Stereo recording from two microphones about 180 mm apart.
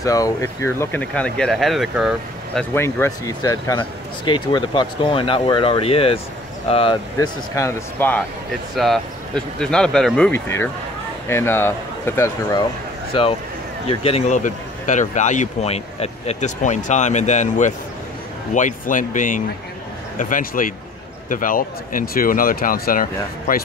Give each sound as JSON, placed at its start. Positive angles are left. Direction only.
{"t": 0.0, "sound": "speech", "side_deg": 20}
{"t": 2.7, "sound": "speech", "side_deg": 15}
{"t": 7.2, "sound": "speech", "side_deg": 15}
{"t": 8.7, "sound": "speech", "side_deg": 0}
{"t": 13.8, "sound": "speech", "side_deg": 35}